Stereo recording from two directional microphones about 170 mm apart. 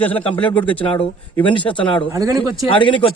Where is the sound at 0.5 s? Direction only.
10° left (ahead or behind).